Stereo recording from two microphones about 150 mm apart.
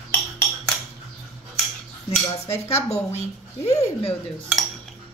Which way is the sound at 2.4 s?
15° left (ahead or behind).